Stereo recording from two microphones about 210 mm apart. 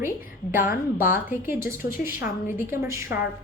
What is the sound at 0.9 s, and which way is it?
A woman's voice, 10° right (ahead or behind).